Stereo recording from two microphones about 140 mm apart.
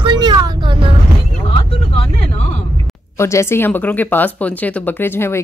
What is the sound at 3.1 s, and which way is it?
Speech, 20° left (ahead or behind).